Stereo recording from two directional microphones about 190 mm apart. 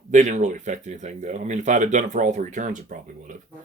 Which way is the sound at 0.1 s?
40° right (ahead or behind).